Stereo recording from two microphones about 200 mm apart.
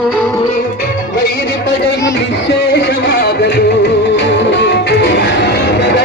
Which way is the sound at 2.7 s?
55° left (ahead or behind).